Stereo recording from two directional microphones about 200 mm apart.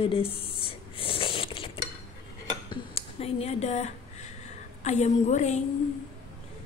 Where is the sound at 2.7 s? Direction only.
30° left (ahead or behind).